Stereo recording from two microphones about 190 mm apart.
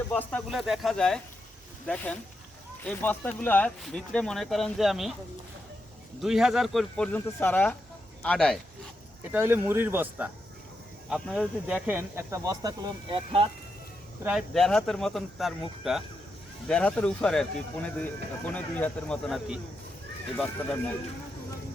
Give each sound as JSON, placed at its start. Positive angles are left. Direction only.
{"t": 0.1, "sound": "speech", "side_deg": 5}
{"t": 2.8, "sound": "speech", "side_deg": 10}
{"t": 6.2, "sound": "speech", "side_deg": 0}
{"t": 9.3, "sound": "speech", "side_deg": -10}
{"t": 14.3, "sound": "speech", "side_deg": 0}